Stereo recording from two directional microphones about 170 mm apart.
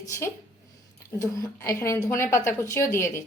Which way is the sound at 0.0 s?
15° left (ahead or behind).